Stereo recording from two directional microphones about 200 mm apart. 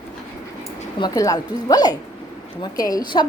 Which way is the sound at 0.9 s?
20° left (ahead or behind).